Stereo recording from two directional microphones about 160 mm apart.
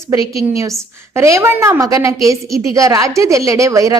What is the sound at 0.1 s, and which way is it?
A woman's voice, 20° right (ahead or behind).